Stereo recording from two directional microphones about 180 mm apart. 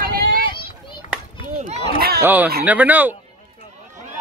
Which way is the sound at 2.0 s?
60° right (ahead or behind).